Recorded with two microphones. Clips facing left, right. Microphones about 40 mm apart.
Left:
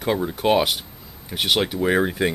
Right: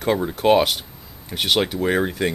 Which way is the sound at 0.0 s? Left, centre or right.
Centre.